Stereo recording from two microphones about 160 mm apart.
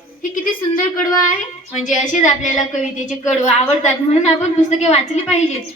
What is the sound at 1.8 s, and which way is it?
A woman's voice, 50° left (ahead or behind).